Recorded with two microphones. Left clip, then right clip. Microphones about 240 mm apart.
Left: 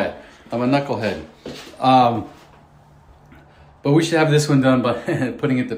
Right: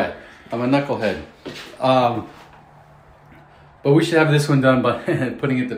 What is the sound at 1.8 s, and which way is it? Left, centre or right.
Speech, centre.